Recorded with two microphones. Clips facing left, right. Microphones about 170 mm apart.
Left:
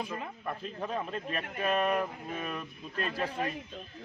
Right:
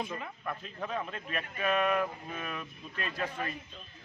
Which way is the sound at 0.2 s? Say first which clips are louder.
Left 2 dB; 35° left (ahead or behind).